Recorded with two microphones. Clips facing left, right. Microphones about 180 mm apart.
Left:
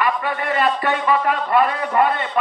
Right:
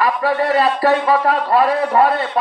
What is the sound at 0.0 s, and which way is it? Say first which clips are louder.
A man's voice: right 5 dB; 35° right (ahead or behind).